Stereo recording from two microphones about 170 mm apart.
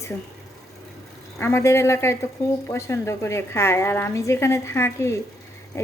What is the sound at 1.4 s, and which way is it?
A woman's voice, 15° left (ahead or behind).